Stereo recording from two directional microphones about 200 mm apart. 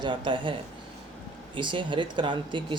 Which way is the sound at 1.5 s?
25° right (ahead or behind).